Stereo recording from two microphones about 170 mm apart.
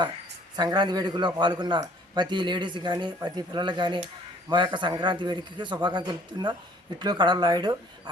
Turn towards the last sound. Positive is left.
turn(degrees=-25)  # may be behind; listen again after turning